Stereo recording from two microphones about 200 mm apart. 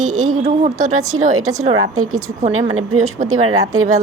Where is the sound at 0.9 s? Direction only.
90° right.